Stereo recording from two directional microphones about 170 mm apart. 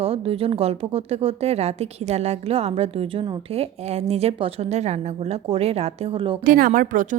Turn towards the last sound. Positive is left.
turn(degrees=-50)  # may be behind; listen again after turning